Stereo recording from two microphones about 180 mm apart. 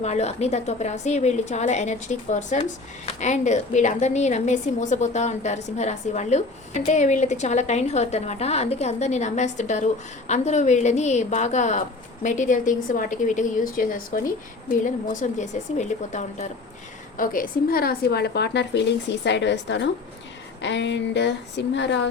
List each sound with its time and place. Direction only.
0.0 s a woman's voice: 40° left (ahead or behind); by 22.0 s 75° left (ahead or behind)